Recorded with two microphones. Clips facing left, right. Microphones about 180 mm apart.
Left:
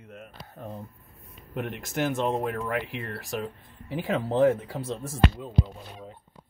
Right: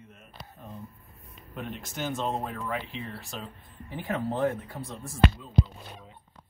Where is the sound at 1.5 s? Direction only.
70° left (ahead or behind); by 5.1 s 90° left.